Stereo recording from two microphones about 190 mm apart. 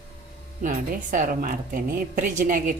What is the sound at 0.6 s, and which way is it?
A woman's voice, 45° right (ahead or behind).